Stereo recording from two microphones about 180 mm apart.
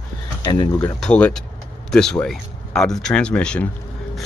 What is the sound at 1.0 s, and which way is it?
Speech, 5° left (ahead or behind).